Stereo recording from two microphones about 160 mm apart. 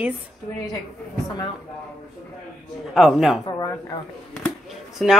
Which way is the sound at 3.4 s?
25° left (ahead or behind).